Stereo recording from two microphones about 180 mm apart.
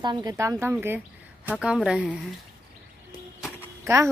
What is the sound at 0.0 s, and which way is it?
Speech, 20° right (ahead or behind).